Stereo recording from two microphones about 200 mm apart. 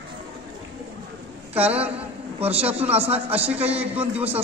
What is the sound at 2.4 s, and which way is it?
Speech, 30° right (ahead or behind).